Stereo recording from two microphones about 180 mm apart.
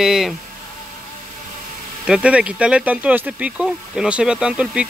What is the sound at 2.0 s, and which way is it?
Speech, 5° right (ahead or behind).